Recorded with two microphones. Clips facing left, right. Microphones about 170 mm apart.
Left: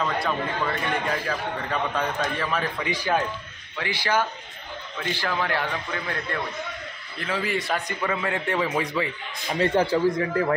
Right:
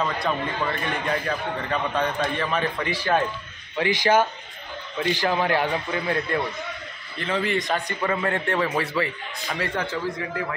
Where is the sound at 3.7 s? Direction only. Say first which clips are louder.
Right 5 dB; 20° right (ahead or behind).